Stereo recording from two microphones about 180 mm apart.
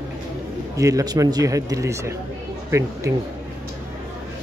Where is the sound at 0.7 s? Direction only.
20° right (ahead or behind).